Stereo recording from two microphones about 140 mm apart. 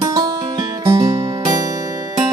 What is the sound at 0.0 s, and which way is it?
Music, 30° right (ahead or behind).